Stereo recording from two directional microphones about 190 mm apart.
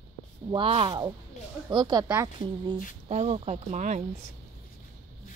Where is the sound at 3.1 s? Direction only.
35° right (ahead or behind).